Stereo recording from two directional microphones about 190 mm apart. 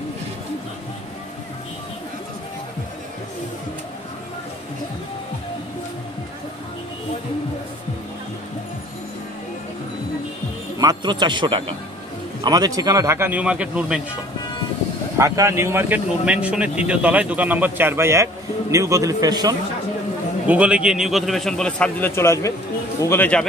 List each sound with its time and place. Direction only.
10.8 s speech: 20° right (ahead or behind); by 14.0 s 5° right (ahead or behind)
15.1 s speech: 15° right (ahead or behind)
20.4 s a man's voice: 5° right (ahead or behind); by 23.4 s 10° left (ahead or behind)